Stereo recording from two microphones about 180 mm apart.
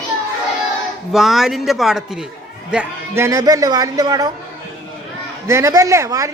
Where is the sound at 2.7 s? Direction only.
15° right (ahead or behind).